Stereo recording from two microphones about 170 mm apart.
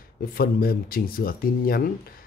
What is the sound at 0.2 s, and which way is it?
Speech, 60° left (ahead or behind).